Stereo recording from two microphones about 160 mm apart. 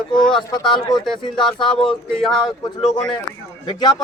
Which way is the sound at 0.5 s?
30° left (ahead or behind).